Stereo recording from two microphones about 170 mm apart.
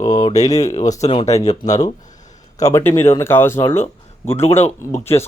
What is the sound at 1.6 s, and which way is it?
Speech, 45° left (ahead or behind).